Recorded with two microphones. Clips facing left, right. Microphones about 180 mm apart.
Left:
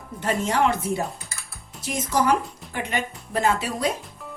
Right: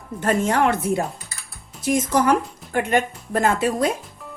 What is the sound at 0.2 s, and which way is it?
Speech, 50° right (ahead or behind).